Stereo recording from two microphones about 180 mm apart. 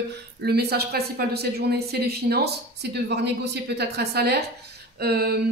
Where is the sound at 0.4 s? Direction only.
65° right (ahead or behind).